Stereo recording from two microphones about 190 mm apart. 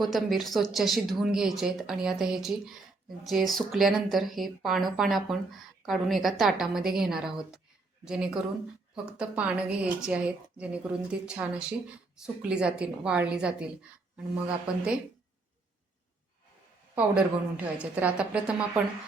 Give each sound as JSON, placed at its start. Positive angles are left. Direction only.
{"t": 0.0, "sound": "a woman's voice", "side_deg": 0}
{"t": 14.7, "sound": "a woman's voice", "side_deg": -5}
{"t": 16.9, "sound": "a woman's voice", "side_deg": -5}